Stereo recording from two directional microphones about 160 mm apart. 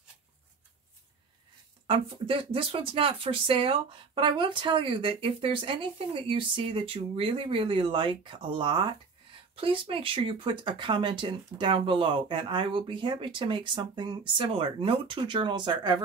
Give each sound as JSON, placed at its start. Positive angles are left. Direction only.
{"t": 1.9, "sound": "speech", "side_deg": -35}